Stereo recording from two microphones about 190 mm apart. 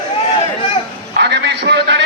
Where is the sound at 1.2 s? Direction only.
60° right (ahead or behind).